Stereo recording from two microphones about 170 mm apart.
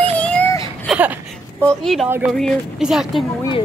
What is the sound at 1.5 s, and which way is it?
Speech, 5° left (ahead or behind).